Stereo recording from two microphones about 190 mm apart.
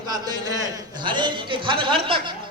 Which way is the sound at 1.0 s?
25° right (ahead or behind).